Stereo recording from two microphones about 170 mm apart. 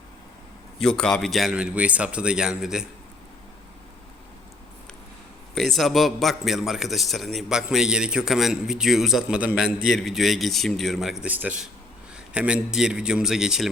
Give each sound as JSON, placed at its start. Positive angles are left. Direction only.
{"t": 0.8, "sound": "a man's voice", "side_deg": 5}
{"t": 5.5, "sound": "a man's voice", "side_deg": 0}